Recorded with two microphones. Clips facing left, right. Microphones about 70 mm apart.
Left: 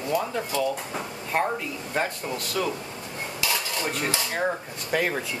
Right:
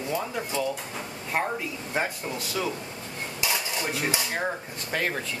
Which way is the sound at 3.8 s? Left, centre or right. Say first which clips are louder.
Left 1 dB; centre.